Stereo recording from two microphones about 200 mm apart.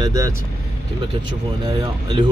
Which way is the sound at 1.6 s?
20° right (ahead or behind).